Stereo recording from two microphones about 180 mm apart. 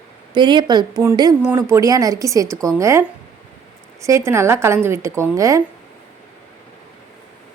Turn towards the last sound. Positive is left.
turn(degrees=-15)  # may be behind; listen again after turning